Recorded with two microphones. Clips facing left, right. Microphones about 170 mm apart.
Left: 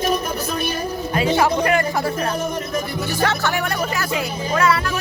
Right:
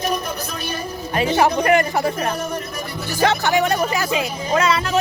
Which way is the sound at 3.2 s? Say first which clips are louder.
Right 5 dB; 15° right (ahead or behind).